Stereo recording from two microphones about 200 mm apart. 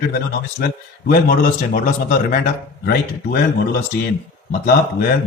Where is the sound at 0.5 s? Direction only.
55° left (ahead or behind).